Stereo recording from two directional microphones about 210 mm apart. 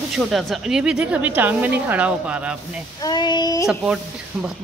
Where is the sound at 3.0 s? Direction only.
20° left (ahead or behind).